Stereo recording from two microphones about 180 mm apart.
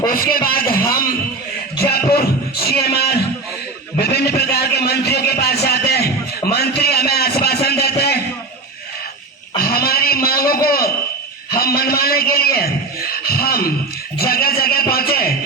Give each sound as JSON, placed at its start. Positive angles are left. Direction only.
{"t": 0.1, "sound": "speech", "side_deg": 55}
{"t": 1.8, "sound": "music", "side_deg": 60}
{"t": 4.0, "sound": "a sound", "side_deg": 65}
{"t": 9.6, "sound": "a sound", "side_deg": 55}
{"t": 11.5, "sound": "a man's voice", "side_deg": 55}
{"t": 14.2, "sound": "music", "side_deg": 55}